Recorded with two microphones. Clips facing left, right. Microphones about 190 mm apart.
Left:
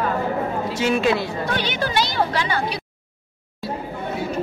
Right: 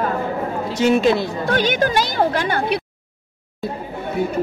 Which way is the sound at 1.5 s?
45° right (ahead or behind).